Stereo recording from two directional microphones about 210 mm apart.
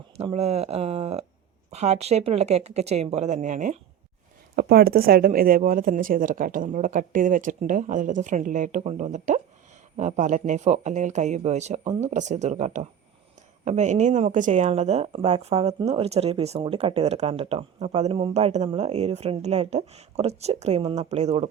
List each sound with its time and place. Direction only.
0.2 s speech: 30° right (ahead or behind)